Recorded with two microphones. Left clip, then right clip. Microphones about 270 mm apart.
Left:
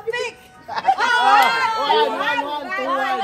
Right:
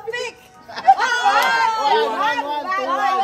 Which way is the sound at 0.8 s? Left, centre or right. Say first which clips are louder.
Right 2 dB; right.